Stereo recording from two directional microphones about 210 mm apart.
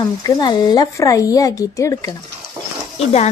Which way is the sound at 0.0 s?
20° left (ahead or behind).